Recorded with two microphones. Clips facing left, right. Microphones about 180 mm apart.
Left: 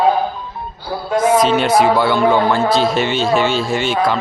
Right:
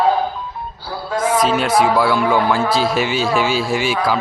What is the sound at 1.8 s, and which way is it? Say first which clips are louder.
Speech: even; centre (ahead or behind).